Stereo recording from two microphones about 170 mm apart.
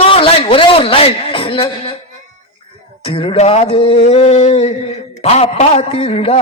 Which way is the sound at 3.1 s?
30° left (ahead or behind).